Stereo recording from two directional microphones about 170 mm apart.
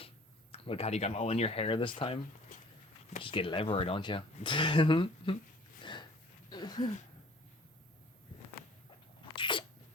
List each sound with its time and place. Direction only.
0.5 s speech: 35° left (ahead or behind)
5.8 s a sound: 25° left (ahead or behind)
9.3 s sneeze: 30° left (ahead or behind)